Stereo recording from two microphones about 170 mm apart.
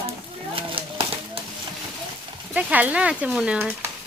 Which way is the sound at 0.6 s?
30° right (ahead or behind).